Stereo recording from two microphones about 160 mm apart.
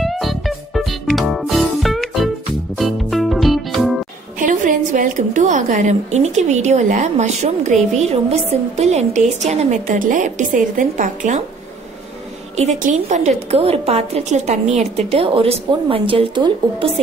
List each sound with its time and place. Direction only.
0.0 s music: centre (ahead or behind)
4.4 s a woman's voice: 55° right (ahead or behind)
12.5 s a woman's voice: 45° right (ahead or behind); by 17.0 s 30° right (ahead or behind)